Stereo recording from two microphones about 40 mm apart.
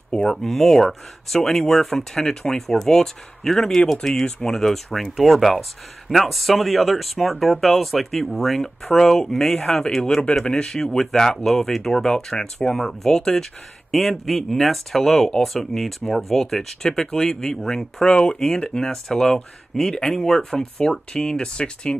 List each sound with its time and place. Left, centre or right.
0.3 s speech: centre
13.9 s speech: centre; by 21.9 s left